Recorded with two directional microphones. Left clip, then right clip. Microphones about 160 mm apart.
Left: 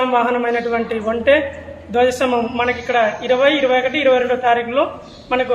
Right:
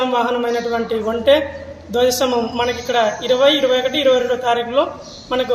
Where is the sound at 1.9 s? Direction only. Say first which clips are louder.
Even; 15° right (ahead or behind).